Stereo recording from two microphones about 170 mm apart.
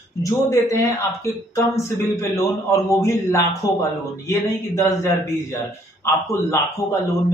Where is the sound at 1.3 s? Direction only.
15° left (ahead or behind).